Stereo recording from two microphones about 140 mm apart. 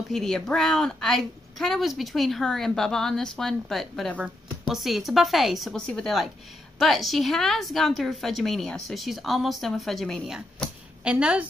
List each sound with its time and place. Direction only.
0.1 s a woman's voice: 5° left (ahead or behind)